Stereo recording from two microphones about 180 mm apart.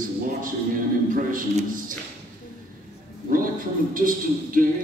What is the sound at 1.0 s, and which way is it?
Speech, 45° right (ahead or behind).